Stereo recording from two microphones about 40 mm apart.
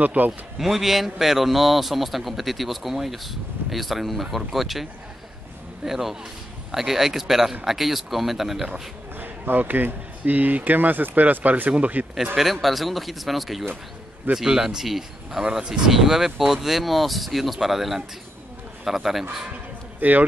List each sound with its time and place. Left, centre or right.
0.0 s speech: right
0.6 s a man's voice: centre
5.9 s a man's voice: centre
9.2 s speech: right
12.6 s a man's voice: centre
14.3 s speech: centre
15.9 s a man's voice: centre
20.0 s speech: right